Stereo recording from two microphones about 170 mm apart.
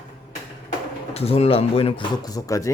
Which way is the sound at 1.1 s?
35° left (ahead or behind).